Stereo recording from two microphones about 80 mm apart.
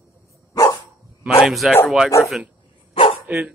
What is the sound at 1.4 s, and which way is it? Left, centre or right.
Speech, centre.